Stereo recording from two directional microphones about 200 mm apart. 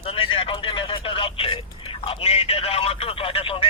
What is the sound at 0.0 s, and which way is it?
Speech, 25° left (ahead or behind).